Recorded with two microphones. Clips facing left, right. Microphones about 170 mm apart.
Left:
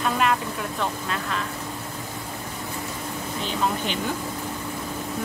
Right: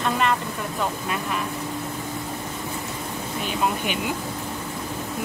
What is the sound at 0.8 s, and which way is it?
Speech, 15° right (ahead or behind).